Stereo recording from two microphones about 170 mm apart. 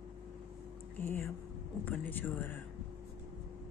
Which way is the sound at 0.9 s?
10° left (ahead or behind).